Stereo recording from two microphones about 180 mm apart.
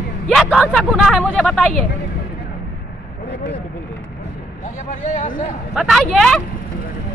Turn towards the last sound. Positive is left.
turn(degrees=5)  # may be behind; listen again after turning